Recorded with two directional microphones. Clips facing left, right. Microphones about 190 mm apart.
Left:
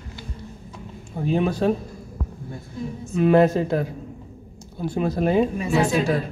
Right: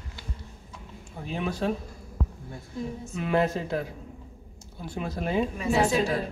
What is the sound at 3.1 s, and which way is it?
Speech, 45° left (ahead or behind).